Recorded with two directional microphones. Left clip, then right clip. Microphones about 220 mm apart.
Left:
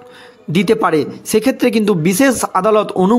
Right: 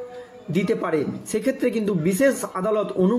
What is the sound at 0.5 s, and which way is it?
A man's voice, 45° left (ahead or behind).